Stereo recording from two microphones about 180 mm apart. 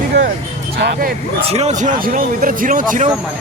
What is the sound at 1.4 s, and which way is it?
Speech, 35° right (ahead or behind).